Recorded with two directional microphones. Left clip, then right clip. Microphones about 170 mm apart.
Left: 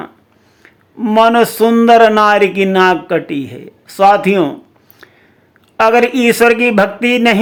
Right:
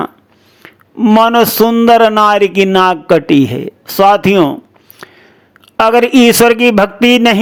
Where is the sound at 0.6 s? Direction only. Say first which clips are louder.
Right 7 dB; 35° right (ahead or behind).